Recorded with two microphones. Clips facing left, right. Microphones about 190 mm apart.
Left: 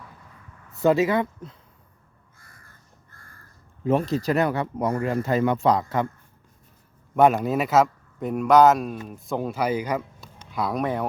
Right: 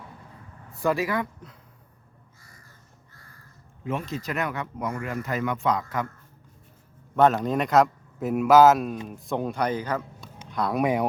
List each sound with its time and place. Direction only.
0.8 s speech: 20° left (ahead or behind)
2.4 s crow: 55° left (ahead or behind)
3.8 s speech: 35° left (ahead or behind)
7.2 s a man's voice: 10° left (ahead or behind)
10.4 s a sound: 5° left (ahead or behind)
10.8 s speech: 10° right (ahead or behind)